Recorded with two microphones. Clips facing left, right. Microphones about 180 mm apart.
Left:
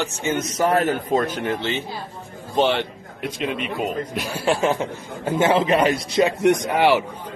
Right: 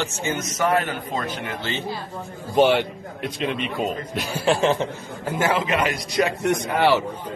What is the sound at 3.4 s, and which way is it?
A man's voice, 5° left (ahead or behind).